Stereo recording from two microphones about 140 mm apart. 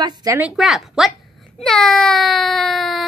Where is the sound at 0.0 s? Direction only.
25° right (ahead or behind).